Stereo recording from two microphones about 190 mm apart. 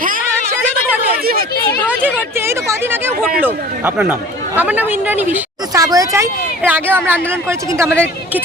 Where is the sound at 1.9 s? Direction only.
10° right (ahead or behind).